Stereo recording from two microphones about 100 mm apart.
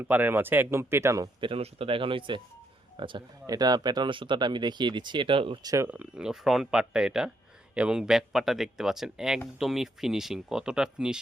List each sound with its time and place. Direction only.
0.0 s speech: 20° right (ahead or behind)
1.4 s speech: 70° right (ahead or behind)
3.4 s speech: 40° right (ahead or behind); by 5.5 s 60° right (ahead or behind)
5.6 s speech: 30° right (ahead or behind)
5.9 s speech: 10° right (ahead or behind)